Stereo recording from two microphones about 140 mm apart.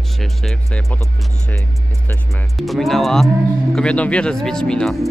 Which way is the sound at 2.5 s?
Centre (ahead or behind).